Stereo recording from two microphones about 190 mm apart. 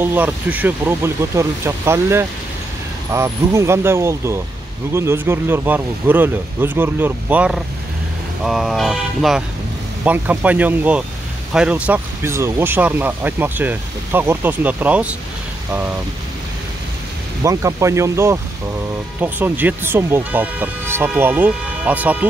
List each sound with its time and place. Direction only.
0.0 s speech: 10° right (ahead or behind)
17.4 s speech: 15° right (ahead or behind)